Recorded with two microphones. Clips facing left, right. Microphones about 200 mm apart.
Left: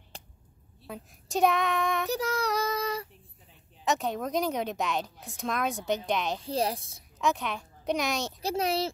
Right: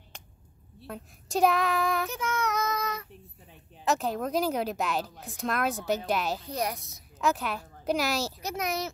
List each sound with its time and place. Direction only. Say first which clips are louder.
0.1 s a sound: left 3 dB; 35° left (ahead or behind)
0.8 s speech: right 1 dB; centre (ahead or behind)
2.0 s child singing: left 2 dB; 35° left (ahead or behind)
3.8 s speech: right 1 dB; centre (ahead or behind)
6.4 s a woman's voice: left 3 dB; 30° left (ahead or behind)
7.2 s a woman's voice: right 1 dB; 5° right (ahead or behind)
8.4 s a child's voice: left 4 dB; 30° left (ahead or behind)